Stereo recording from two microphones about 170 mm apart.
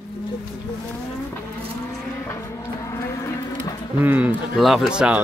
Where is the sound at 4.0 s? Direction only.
10° right (ahead or behind).